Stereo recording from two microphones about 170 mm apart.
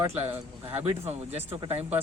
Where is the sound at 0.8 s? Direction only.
35° right (ahead or behind).